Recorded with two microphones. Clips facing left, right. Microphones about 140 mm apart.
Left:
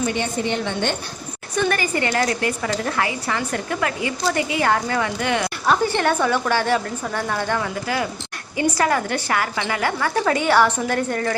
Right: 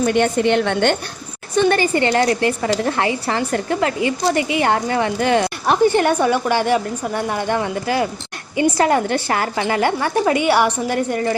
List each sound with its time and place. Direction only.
0.0 s a woman's voice: 60° right (ahead or behind)
1.5 s a woman's voice: 30° right (ahead or behind)
5.7 s a woman's voice: 20° right (ahead or behind)